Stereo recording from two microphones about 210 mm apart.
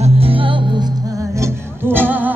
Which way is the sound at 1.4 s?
10° right (ahead or behind).